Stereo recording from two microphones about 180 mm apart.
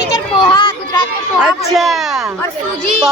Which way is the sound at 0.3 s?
25° left (ahead or behind).